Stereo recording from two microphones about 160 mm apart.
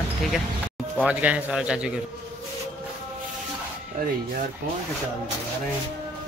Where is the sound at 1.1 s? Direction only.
10° right (ahead or behind).